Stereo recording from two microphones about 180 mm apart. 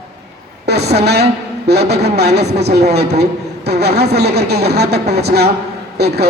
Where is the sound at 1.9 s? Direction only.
65° right (ahead or behind).